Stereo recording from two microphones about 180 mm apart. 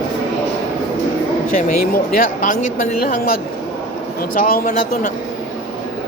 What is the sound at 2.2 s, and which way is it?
Speech, 45° left (ahead or behind).